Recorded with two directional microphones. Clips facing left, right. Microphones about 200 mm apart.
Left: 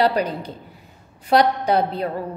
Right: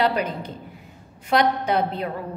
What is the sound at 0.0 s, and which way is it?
Speech, 35° left (ahead or behind).